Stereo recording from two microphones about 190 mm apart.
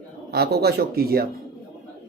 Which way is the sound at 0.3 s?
55° right (ahead or behind).